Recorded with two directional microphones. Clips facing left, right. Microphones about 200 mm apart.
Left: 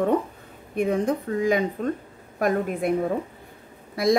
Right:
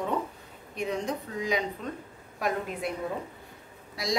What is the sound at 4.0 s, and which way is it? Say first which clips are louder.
Speech: left 13 dB; 55° left (ahead or behind).